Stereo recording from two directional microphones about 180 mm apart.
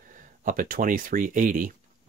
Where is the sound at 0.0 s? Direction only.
50° right (ahead or behind).